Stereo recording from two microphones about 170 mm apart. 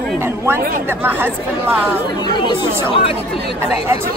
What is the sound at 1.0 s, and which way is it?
Speech, 10° right (ahead or behind).